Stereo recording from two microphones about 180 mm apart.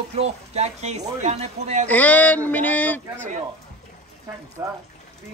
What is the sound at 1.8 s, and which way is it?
Speech, 10° left (ahead or behind).